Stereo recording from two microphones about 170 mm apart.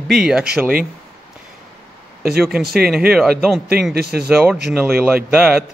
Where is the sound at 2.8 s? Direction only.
5° right (ahead or behind).